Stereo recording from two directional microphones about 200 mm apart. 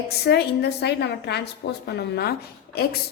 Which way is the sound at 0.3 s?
55° left (ahead or behind).